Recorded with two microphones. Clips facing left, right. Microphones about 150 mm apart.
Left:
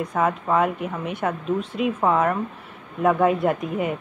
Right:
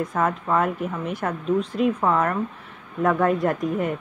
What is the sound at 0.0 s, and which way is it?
Speech, centre (ahead or behind).